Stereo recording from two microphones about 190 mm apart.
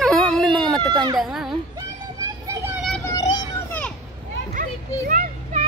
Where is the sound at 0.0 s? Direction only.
5° left (ahead or behind).